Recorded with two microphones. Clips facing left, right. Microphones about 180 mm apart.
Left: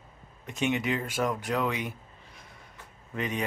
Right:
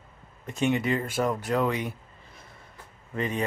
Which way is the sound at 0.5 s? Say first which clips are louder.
Right 3 dB; 5° left (ahead or behind).